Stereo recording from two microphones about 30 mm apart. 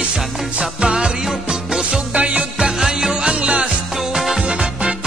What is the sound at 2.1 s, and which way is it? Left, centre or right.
Music, right.